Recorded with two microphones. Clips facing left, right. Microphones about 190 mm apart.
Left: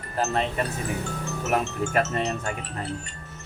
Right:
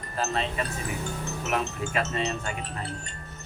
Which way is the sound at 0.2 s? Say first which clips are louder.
Left 3 dB; 50° left (ahead or behind).